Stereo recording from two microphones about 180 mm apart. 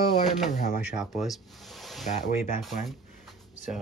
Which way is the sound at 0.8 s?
5° right (ahead or behind).